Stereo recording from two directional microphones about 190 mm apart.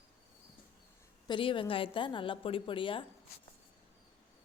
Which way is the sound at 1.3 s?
25° left (ahead or behind).